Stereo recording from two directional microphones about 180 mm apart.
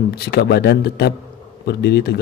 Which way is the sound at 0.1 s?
65° left (ahead or behind).